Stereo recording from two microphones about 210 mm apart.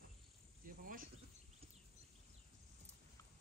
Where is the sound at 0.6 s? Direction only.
40° right (ahead or behind).